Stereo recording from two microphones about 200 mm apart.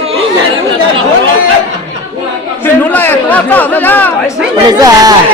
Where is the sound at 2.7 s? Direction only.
10° left (ahead or behind).